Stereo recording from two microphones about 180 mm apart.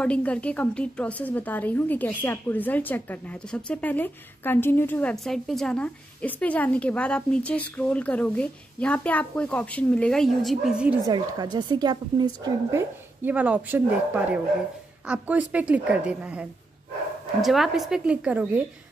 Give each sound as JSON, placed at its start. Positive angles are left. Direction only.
{"t": 0.0, "sound": "a woman's voice", "side_deg": 5}
{"t": 11.1, "sound": "a woman's voice", "side_deg": -25}
{"t": 13.2, "sound": "a woman's voice", "side_deg": -5}